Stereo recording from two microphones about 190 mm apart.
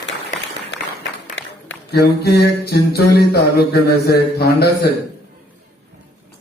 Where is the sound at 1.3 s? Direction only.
65° left (ahead or behind).